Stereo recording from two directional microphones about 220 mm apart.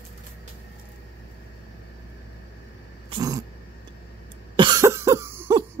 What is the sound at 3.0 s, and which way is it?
Cat, 15° right (ahead or behind).